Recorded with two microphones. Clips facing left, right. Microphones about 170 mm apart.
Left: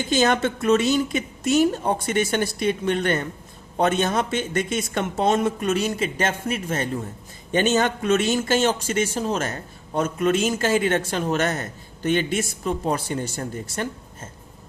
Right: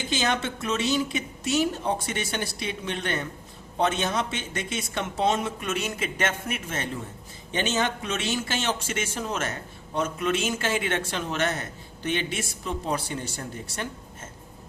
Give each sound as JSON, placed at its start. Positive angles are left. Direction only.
{"t": 0.1, "sound": "speech", "side_deg": 50}